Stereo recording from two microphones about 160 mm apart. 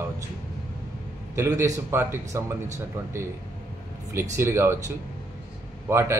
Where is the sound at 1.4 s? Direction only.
20° right (ahead or behind).